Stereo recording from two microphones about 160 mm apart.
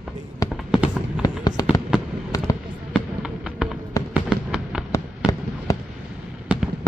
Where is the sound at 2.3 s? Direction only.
20° left (ahead or behind).